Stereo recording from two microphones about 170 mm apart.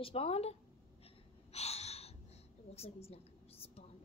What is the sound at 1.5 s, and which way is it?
Snort, 40° left (ahead or behind).